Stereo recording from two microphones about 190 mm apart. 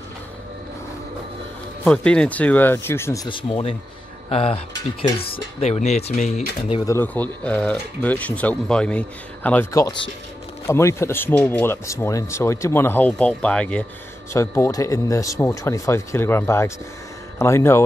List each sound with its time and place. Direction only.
1.9 s speech: 5° left (ahead or behind)
3.3 s speech: 25° left (ahead or behind)
6.9 s speech: 10° left (ahead or behind)